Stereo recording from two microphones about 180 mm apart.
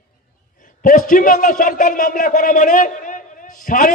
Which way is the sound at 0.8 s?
50° left (ahead or behind).